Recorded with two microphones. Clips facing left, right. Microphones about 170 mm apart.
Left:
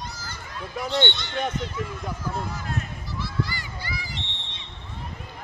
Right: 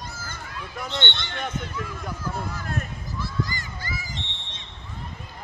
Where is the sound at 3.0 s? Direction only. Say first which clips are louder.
Even; 45° right (ahead or behind).